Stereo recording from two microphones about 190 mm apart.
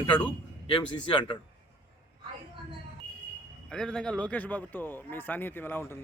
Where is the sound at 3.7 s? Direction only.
5° left (ahead or behind).